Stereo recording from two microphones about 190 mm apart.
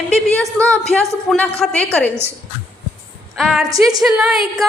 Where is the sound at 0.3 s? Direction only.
5° left (ahead or behind).